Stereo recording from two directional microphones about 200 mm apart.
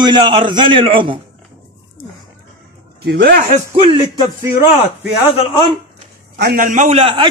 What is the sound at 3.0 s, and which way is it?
Speech, 45° right (ahead or behind).